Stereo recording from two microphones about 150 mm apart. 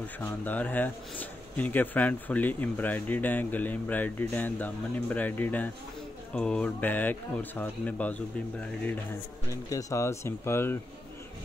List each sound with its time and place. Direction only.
0.2 s speech: 10° left (ahead or behind)
9.5 s speech: 20° left (ahead or behind)